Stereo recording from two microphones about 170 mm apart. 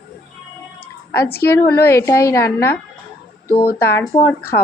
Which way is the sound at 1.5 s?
15° left (ahead or behind).